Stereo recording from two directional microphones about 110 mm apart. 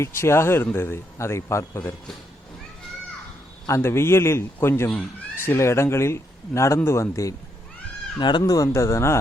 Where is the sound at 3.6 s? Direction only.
25° left (ahead or behind).